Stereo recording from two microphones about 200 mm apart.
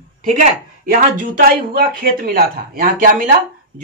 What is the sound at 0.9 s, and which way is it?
Speech, 45° right (ahead or behind).